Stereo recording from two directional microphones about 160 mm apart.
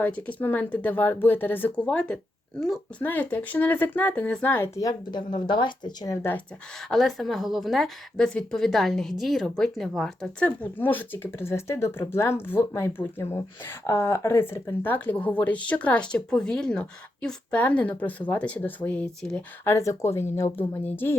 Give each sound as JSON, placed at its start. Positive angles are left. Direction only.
{"t": 0.0, "sound": "speech", "side_deg": 10}
{"t": 6.9, "sound": "speech", "side_deg": 0}
{"t": 19.6, "sound": "speech", "side_deg": 20}